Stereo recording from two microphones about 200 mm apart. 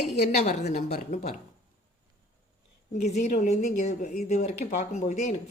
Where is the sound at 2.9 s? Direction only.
35° left (ahead or behind).